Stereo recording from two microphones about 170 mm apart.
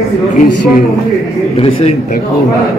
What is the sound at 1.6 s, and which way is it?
Speech, 35° left (ahead or behind).